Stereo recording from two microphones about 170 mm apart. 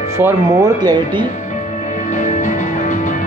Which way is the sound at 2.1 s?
50° left (ahead or behind).